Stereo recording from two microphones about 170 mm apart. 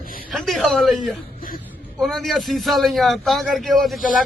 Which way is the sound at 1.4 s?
60° left (ahead or behind).